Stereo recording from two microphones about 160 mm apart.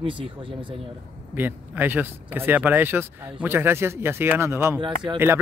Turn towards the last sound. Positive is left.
turn(degrees=-30)  # may be behind; listen again after turning